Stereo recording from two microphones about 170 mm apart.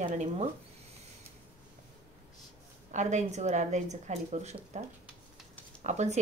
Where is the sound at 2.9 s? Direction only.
45° right (ahead or behind).